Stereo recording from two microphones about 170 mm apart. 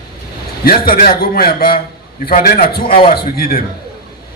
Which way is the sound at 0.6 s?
60° left (ahead or behind).